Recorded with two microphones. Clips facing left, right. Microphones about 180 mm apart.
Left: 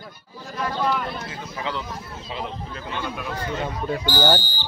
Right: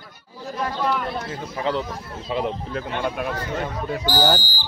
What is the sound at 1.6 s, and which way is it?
Speech, 40° right (ahead or behind).